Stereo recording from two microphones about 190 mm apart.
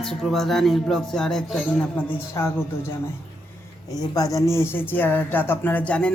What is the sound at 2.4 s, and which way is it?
Speech, 20° left (ahead or behind).